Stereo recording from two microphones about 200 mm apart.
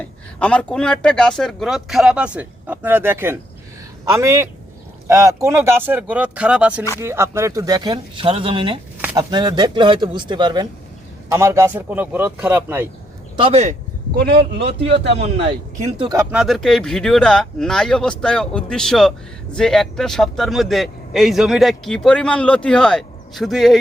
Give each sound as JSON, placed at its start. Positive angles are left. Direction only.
{"t": 0.0, "sound": "speech", "side_deg": 5}
{"t": 13.3, "sound": "speech", "side_deg": -30}
{"t": 14.2, "sound": "speech", "side_deg": -55}
{"t": 14.8, "sound": "speech", "side_deg": -30}
{"t": 16.1, "sound": "speech", "side_deg": -5}